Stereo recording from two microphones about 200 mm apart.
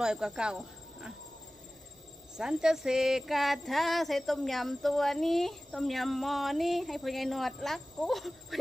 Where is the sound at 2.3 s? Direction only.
5° right (ahead or behind).